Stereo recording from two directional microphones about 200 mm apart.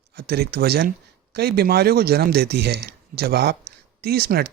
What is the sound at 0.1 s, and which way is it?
Speech, 55° right (ahead or behind).